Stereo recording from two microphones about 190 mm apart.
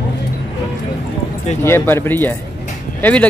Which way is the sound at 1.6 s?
15° left (ahead or behind).